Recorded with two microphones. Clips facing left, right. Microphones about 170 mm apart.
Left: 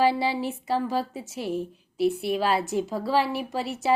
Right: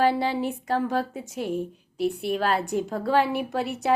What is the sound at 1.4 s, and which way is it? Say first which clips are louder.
Speech: right 1 dB; 45° right (ahead or behind).